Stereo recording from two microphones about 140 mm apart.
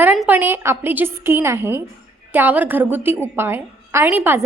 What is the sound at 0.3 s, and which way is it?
A woman's voice, 15° right (ahead or behind).